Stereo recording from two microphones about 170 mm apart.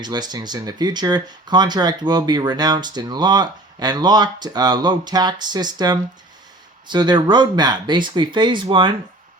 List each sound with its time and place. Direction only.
0.0 s speech: 25° right (ahead or behind)